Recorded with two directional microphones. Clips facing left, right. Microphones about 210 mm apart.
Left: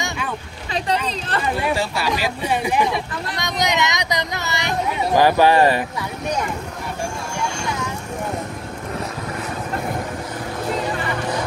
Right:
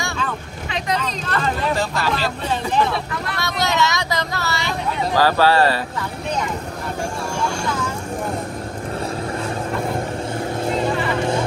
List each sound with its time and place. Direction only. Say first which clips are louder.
1.4 s speech: even; 10° left (ahead or behind)